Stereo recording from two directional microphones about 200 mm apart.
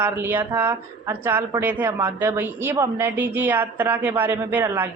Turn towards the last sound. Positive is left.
turn(degrees=-10)  # may be behind; listen again after turning